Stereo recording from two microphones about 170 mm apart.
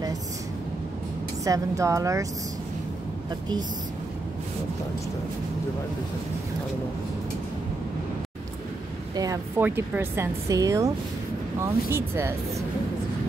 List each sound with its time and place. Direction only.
1.4 s speech: 20° right (ahead or behind)
9.1 s speech: 20° right (ahead or behind)